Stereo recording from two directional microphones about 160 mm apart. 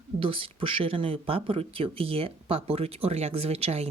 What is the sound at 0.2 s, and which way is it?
Speech, 35° right (ahead or behind).